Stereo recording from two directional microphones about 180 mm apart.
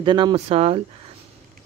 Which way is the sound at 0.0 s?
25° right (ahead or behind).